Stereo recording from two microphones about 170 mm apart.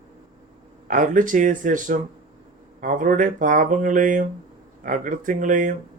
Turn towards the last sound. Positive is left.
turn(degrees=-50)  # may be behind; listen again after turning